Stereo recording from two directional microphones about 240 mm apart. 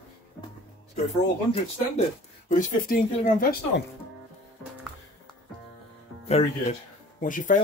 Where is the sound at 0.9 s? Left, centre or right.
Left.